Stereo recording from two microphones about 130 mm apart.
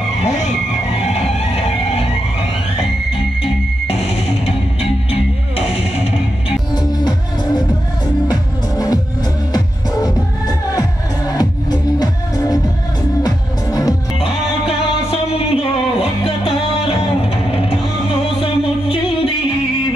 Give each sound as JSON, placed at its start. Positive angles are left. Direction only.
{"t": 0.9, "sound": "music", "side_deg": 50}
{"t": 3.8, "sound": "music", "side_deg": 50}
{"t": 6.7, "sound": "music", "side_deg": 30}
{"t": 14.2, "sound": "music", "side_deg": 45}